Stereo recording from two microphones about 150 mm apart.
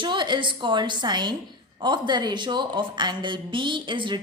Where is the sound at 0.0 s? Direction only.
30° right (ahead or behind).